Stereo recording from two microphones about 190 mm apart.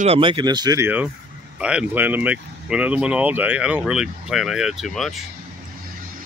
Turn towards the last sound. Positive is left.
turn(degrees=0)  # may be behind; listen again after turning